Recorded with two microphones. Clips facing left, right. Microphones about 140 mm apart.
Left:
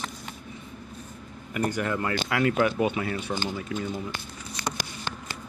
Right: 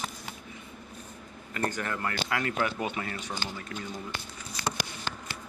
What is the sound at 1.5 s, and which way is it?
Speech, 10° left (ahead or behind).